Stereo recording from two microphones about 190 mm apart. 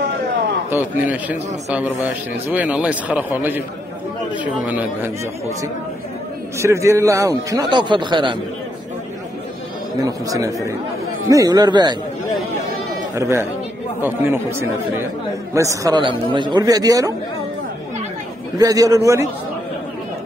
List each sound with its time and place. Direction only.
0.7 s a man's voice: 10° right (ahead or behind); by 8.4 s 25° right (ahead or behind)
10.0 s a man's voice: 20° right (ahead or behind)
13.1 s a man's voice: 15° right (ahead or behind)
18.6 s speech: 20° right (ahead or behind)